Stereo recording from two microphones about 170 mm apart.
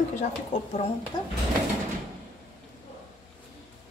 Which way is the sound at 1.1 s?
20° left (ahead or behind).